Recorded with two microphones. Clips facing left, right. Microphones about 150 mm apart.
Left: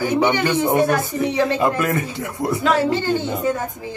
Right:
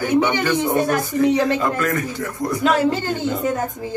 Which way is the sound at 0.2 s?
20° left (ahead or behind).